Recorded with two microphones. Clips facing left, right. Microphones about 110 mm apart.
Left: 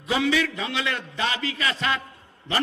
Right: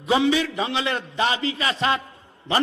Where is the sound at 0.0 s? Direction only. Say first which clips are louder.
Right 3 dB; 25° right (ahead or behind).